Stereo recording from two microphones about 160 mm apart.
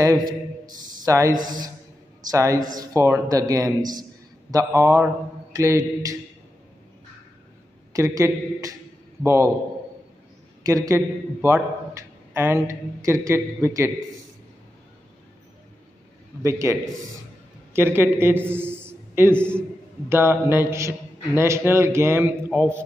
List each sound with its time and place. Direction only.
0.0 s a man's voice: 25° right (ahead or behind)
7.9 s a man's voice: 20° right (ahead or behind)
10.6 s a man's voice: 20° right (ahead or behind)
11.4 s a sound: 15° right (ahead or behind)
12.6 s a man's voice: 20° right (ahead or behind)
16.4 s a man's voice: 20° right (ahead or behind)
17.7 s a man's voice: 15° right (ahead or behind)